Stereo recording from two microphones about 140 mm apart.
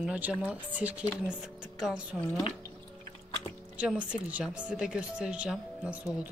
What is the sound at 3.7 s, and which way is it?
Speech, 10° right (ahead or behind).